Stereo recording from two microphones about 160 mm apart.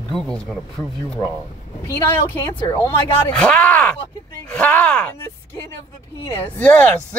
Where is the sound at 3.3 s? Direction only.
5° left (ahead or behind).